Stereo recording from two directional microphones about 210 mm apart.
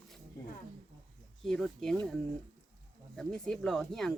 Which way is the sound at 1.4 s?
Centre (ahead or behind).